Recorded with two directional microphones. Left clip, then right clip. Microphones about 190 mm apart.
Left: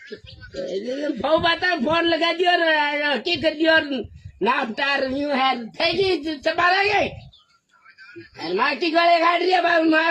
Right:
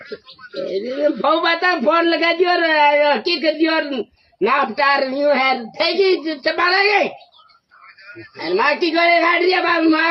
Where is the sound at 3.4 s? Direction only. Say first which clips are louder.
Right 1 dB; 25° left (ahead or behind).